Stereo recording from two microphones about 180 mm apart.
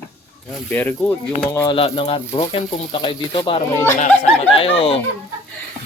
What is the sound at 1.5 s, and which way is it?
Speech, 25° left (ahead or behind).